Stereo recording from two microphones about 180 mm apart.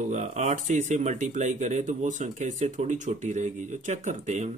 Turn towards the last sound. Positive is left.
turn(degrees=-40)  # may be behind; listen again after turning